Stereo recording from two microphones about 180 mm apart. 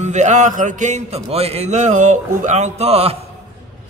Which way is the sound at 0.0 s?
40° right (ahead or behind).